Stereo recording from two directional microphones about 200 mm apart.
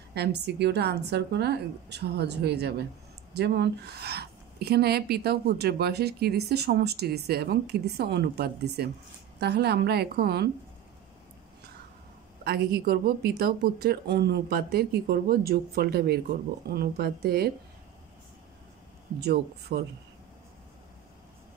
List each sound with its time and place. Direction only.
0.1 s a woman's voice: 55° right (ahead or behind)
12.4 s a woman's voice: 50° right (ahead or behind)
19.1 s a woman's voice: 55° right (ahead or behind)